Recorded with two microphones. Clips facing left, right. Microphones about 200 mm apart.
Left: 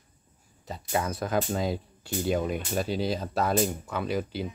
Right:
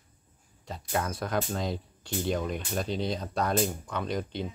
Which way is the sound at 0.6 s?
5° left (ahead or behind).